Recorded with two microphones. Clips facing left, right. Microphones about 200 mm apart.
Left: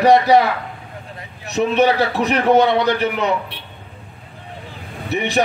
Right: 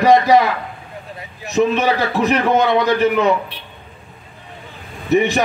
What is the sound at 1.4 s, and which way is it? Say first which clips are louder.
A man's voice: even; 65° left (ahead or behind).